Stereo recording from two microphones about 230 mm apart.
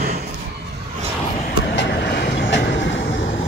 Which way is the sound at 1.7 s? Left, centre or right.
Left.